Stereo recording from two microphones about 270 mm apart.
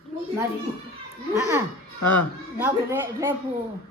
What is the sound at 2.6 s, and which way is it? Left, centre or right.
Speech, centre.